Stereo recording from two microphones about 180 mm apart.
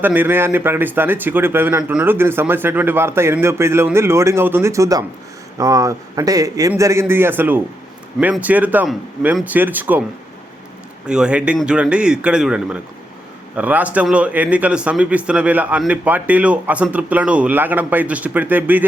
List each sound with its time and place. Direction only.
0.0 s speech: 10° right (ahead or behind)
11.0 s a man's voice: 5° right (ahead or behind)